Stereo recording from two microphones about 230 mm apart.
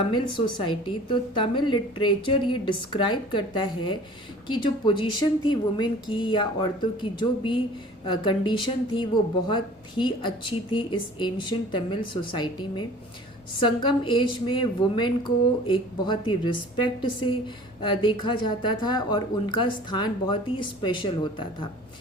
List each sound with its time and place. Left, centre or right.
0.0 s a woman's voice: left